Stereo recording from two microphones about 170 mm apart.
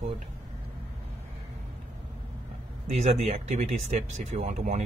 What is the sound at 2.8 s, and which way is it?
Speech, 40° right (ahead or behind).